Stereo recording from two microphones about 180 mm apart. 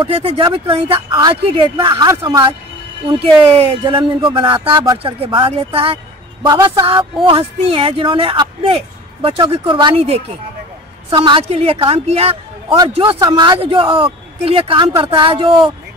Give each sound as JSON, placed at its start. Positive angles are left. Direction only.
{"t": 0.0, "sound": "a woman's voice", "side_deg": -30}